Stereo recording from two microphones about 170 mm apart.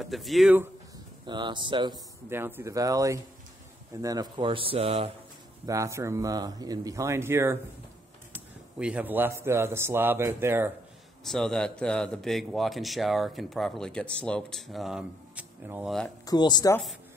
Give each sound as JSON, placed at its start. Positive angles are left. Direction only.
{"t": 0.0, "sound": "a man's voice", "side_deg": 0}
{"t": 1.2, "sound": "speech", "side_deg": -25}
{"t": 2.2, "sound": "a man's voice", "side_deg": -15}
{"t": 5.7, "sound": "speech", "side_deg": -15}
{"t": 8.7, "sound": "a man's voice", "side_deg": -5}
{"t": 11.2, "sound": "a man's voice", "side_deg": 0}
{"t": 16.3, "sound": "speech", "side_deg": 25}